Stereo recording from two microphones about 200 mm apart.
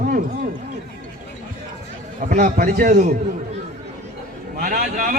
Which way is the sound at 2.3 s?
40° right (ahead or behind).